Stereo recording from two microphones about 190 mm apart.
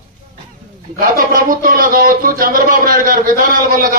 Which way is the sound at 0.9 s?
50° right (ahead or behind).